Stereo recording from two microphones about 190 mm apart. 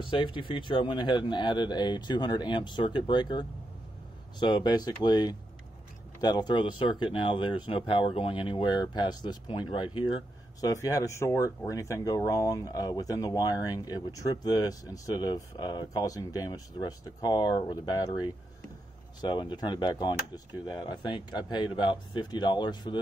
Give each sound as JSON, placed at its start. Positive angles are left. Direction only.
{"t": 0.0, "sound": "speech", "side_deg": 25}